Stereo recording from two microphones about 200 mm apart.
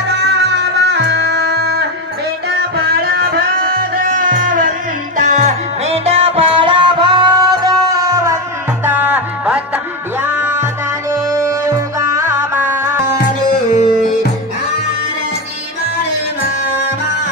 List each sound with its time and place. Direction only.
0.3 s music: 55° right (ahead or behind)
2.9 s music: 50° right (ahead or behind); by 13.0 s 15° right (ahead or behind)